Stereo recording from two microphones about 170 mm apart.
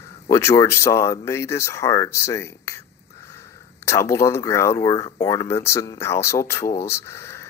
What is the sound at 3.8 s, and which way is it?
Speech, 15° left (ahead or behind).